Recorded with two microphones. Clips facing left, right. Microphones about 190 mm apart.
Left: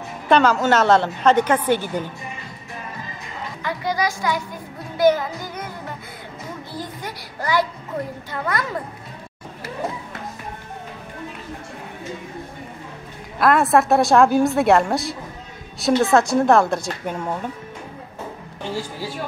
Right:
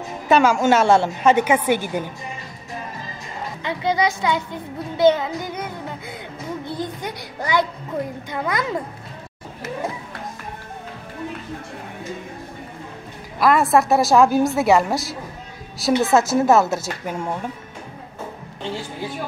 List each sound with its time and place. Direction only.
0.3 s a woman's voice: 10° right (ahead or behind)
3.6 s a child's voice: 25° right (ahead or behind)
6.7 s a child's voice: 20° right (ahead or behind)
13.4 s a woman's voice: centre (ahead or behind)
18.6 s a child's voice: 20° right (ahead or behind)